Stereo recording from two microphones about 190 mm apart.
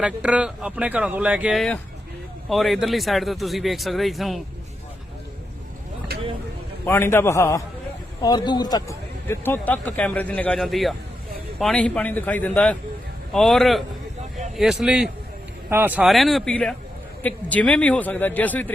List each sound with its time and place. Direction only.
0.0 s speech: 5° right (ahead or behind)
6.8 s speech: 10° left (ahead or behind)